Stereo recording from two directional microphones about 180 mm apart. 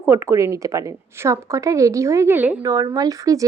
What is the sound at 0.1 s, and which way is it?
Speech, 15° right (ahead or behind).